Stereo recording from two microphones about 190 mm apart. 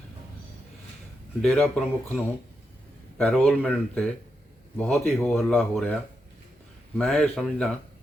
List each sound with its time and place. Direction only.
1.4 s speech: 5° left (ahead or behind)
7.0 s speech: 5° left (ahead or behind)